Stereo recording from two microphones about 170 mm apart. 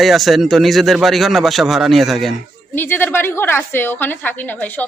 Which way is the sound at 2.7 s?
15° left (ahead or behind).